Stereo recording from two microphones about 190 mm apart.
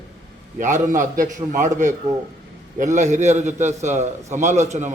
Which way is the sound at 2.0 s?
20° right (ahead or behind).